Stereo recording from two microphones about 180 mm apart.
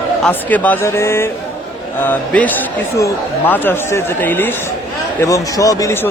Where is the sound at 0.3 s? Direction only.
10° left (ahead or behind).